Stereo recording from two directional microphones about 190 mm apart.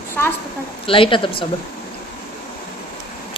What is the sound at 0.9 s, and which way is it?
Speech, 25° left (ahead or behind).